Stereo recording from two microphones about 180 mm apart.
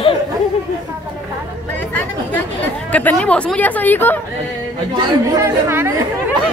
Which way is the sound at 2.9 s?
5° left (ahead or behind).